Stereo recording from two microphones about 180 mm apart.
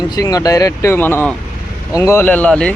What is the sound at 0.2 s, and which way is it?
Speech, 20° left (ahead or behind).